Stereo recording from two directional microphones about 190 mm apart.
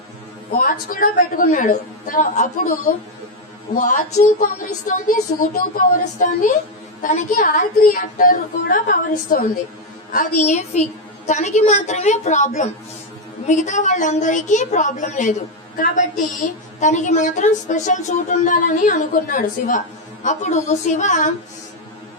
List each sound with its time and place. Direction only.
0.5 s a woman's voice: 45° left (ahead or behind)
4.4 s a woman's voice: 45° left (ahead or behind)